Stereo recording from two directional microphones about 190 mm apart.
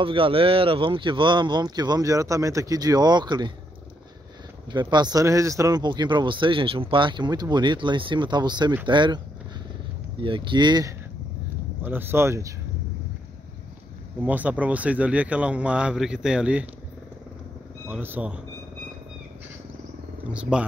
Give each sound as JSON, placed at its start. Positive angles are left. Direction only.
{"t": 0.0, "sound": "speech", "side_deg": -25}
{"t": 4.6, "sound": "speech", "side_deg": -25}
{"t": 10.2, "sound": "speech", "side_deg": -25}
{"t": 14.2, "sound": "speech", "side_deg": -10}
{"t": 17.8, "sound": "speech", "side_deg": -10}
{"t": 20.2, "sound": "speech", "side_deg": -5}